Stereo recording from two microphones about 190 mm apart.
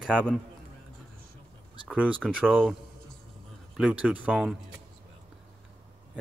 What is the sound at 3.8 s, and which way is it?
Speech, 5° right (ahead or behind).